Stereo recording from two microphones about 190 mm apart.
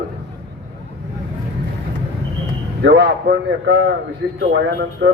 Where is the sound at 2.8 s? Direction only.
65° right (ahead or behind).